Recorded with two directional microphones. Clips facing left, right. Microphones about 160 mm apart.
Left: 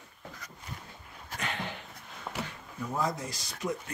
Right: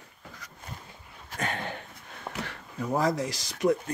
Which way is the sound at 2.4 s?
75° right (ahead or behind).